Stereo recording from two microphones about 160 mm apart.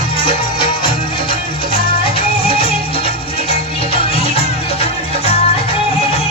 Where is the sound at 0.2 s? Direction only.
35° left (ahead or behind).